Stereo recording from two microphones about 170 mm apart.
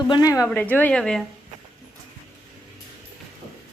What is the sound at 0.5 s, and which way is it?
Speech, 10° left (ahead or behind).